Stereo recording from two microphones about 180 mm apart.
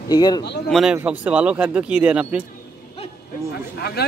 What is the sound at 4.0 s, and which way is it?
Speech, 65° left (ahead or behind).